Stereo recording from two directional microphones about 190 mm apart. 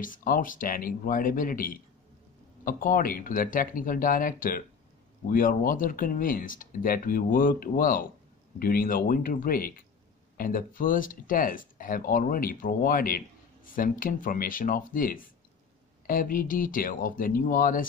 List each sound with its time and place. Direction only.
0.0 s speech: 45° left (ahead or behind)